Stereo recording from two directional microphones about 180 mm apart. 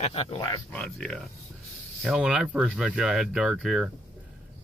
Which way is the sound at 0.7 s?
5° left (ahead or behind).